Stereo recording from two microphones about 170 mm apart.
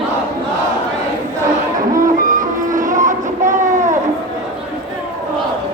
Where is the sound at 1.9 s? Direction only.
55° right (ahead or behind).